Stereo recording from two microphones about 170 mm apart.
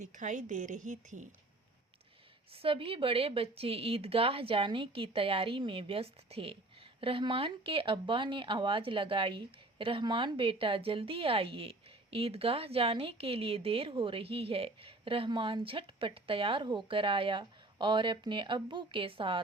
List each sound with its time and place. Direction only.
0.0 s a woman's voice: 45° right (ahead or behind)
2.5 s speech: 35° right (ahead or behind)